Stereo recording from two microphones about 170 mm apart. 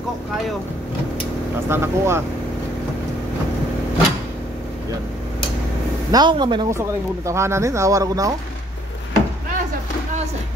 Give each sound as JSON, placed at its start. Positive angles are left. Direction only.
{"t": 1.7, "sound": "speech", "side_deg": -15}
{"t": 6.1, "sound": "speech", "side_deg": -25}
{"t": 6.7, "sound": "speech", "side_deg": -15}